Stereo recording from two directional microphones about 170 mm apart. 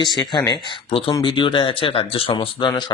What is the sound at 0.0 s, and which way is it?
Speech, 25° left (ahead or behind).